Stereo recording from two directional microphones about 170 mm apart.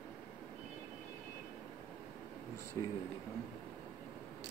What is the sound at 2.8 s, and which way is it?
Speech, 20° left (ahead or behind).